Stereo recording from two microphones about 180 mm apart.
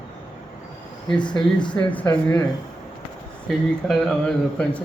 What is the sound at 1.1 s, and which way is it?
Speech, 25° left (ahead or behind).